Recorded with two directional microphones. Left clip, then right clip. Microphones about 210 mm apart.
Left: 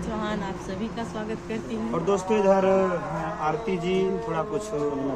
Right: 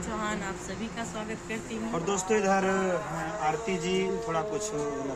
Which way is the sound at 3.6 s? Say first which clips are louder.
Left 3 dB; 15° right (ahead or behind).